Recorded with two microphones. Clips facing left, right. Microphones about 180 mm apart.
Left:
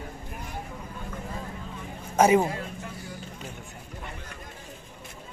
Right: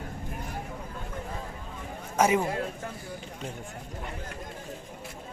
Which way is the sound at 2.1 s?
35° left (ahead or behind).